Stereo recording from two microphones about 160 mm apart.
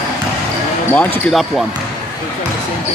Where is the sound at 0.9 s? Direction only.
Centre (ahead or behind).